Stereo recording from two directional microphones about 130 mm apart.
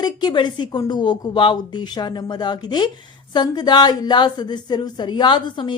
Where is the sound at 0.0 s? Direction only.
35° left (ahead or behind).